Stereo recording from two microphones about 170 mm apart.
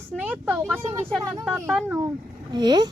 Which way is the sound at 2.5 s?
25° right (ahead or behind).